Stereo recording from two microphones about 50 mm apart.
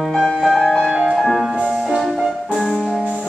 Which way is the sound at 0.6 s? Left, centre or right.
Centre.